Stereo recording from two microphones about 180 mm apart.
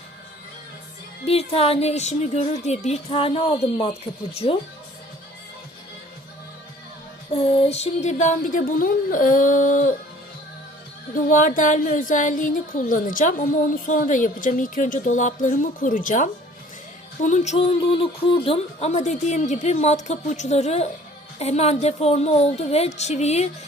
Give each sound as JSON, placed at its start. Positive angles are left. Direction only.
{"t": 1.2, "sound": "speech", "side_deg": 35}
{"t": 7.3, "sound": "a woman's voice", "side_deg": 35}
{"t": 11.1, "sound": "a woman's voice", "side_deg": 45}